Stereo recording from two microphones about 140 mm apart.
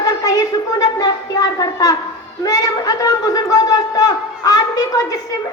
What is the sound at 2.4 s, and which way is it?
Speech, 25° left (ahead or behind).